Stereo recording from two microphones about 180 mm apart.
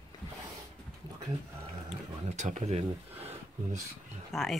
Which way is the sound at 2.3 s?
40° right (ahead or behind).